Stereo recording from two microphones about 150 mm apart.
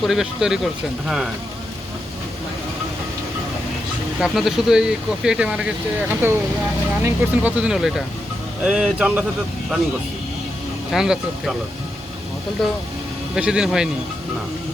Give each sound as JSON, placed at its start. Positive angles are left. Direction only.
{"t": 0.0, "sound": "speech", "side_deg": 0}
{"t": 4.2, "sound": "speech", "side_deg": 0}
{"t": 10.9, "sound": "speech", "side_deg": -5}
{"t": 12.6, "sound": "speech", "side_deg": 0}